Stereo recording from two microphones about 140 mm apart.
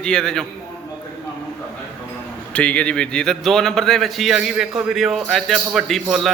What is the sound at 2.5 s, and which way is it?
A man's voice, 10° left (ahead or behind).